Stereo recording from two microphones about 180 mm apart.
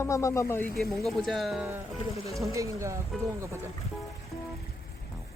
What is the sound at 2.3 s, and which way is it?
Speech, 15° right (ahead or behind).